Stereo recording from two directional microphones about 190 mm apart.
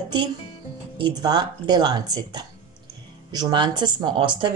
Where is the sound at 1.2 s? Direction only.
25° right (ahead or behind).